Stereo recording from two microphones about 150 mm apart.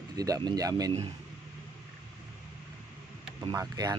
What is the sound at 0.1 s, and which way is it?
Speech, 25° right (ahead or behind).